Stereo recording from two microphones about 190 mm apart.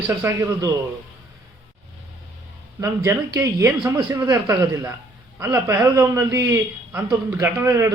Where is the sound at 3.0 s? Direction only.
15° right (ahead or behind).